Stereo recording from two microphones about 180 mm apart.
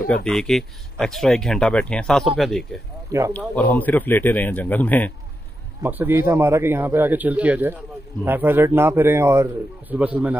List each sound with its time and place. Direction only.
0.0 s speech: 5° left (ahead or behind)
3.1 s speech: 15° right (ahead or behind)
3.3 s speech: 10° left (ahead or behind)
5.8 s a man's voice: 10° right (ahead or behind)